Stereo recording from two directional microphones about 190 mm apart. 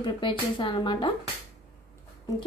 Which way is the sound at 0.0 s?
25° left (ahead or behind).